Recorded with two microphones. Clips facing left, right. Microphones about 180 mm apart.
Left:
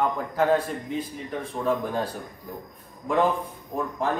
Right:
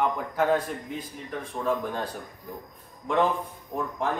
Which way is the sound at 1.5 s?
5° left (ahead or behind).